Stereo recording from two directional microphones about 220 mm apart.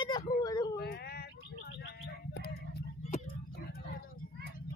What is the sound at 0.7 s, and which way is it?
Bird, 45° left (ahead or behind).